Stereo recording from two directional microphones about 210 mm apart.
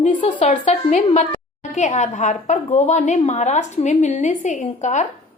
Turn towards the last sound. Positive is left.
turn(degrees=35)  # may be behind; listen again after turning